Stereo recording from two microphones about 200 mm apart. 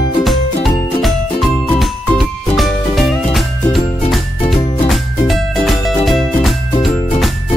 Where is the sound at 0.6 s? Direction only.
Centre (ahead or behind).